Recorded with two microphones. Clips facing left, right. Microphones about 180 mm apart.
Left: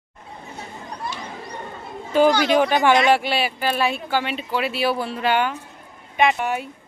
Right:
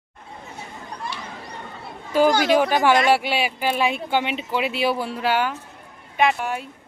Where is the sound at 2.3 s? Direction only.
45° right (ahead or behind).